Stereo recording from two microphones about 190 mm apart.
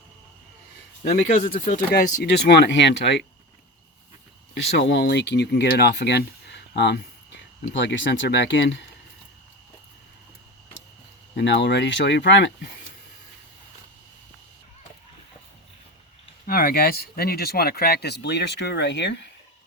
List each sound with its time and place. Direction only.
1.1 s speech: 40° left (ahead or behind); by 3.2 s 65° left (ahead or behind)
4.8 s speech: 65° left (ahead or behind)
11.3 s speech: 65° left (ahead or behind)
16.5 s speech: 50° left (ahead or behind); by 19.3 s 65° left (ahead or behind)